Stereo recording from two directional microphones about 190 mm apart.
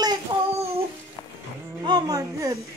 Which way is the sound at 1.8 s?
20° right (ahead or behind).